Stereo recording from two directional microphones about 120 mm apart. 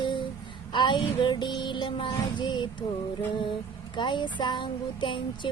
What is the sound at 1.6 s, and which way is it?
Speech, 40° left (ahead or behind).